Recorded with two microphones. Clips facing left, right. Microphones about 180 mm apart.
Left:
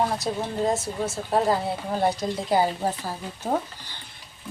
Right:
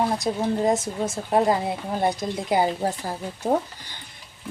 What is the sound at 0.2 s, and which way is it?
Speech, 15° right (ahead or behind).